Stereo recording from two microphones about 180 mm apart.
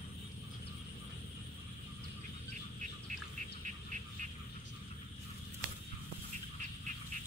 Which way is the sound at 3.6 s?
45° right (ahead or behind).